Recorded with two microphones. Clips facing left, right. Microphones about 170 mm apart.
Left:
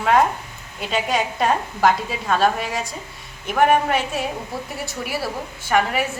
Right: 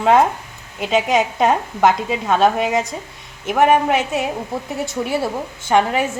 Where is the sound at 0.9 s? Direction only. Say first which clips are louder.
Right 5 dB; 20° right (ahead or behind).